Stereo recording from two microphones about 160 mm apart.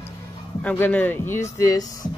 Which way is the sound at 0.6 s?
10° left (ahead or behind).